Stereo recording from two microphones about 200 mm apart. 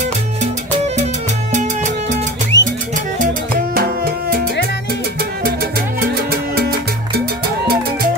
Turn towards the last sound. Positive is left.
turn(degrees=-50)  # may be behind; listen again after turning